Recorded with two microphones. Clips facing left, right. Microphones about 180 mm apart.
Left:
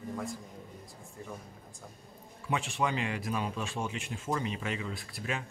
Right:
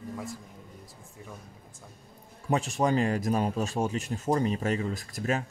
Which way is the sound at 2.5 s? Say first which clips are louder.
Right 6 dB; 40° right (ahead or behind).